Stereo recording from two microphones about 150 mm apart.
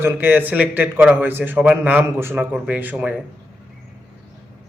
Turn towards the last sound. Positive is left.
turn(degrees=-10)  # may be behind; listen again after turning